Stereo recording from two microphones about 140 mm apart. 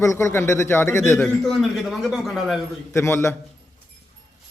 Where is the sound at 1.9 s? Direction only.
Centre (ahead or behind).